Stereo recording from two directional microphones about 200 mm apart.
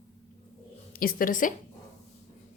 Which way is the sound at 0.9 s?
45° left (ahead or behind).